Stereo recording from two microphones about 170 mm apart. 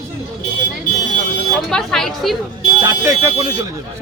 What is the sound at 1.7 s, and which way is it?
Speech, 5° left (ahead or behind).